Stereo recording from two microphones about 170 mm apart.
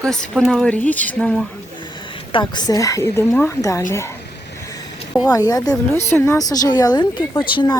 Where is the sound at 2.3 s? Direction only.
30° left (ahead or behind).